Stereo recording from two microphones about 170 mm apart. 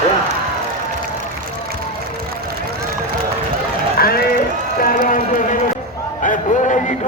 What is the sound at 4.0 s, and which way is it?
Run, 65° left (ahead or behind).